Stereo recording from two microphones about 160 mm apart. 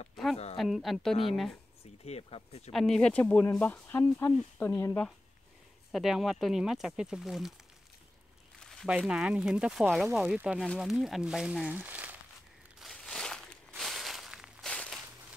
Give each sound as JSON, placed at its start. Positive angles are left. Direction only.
{"t": 0.1, "sound": "a sound", "side_deg": 0}
{"t": 0.6, "sound": "speech", "side_deg": 0}
{"t": 2.0, "sound": "speech", "side_deg": 40}
{"t": 2.7, "sound": "speech", "side_deg": 0}
{"t": 5.9, "sound": "speech", "side_deg": 0}
{"t": 8.5, "sound": "speech", "side_deg": 0}
{"t": 12.8, "sound": "a sound", "side_deg": 5}